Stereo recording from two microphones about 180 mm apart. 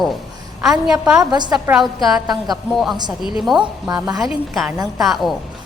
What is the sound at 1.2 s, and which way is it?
Speech, 25° right (ahead or behind).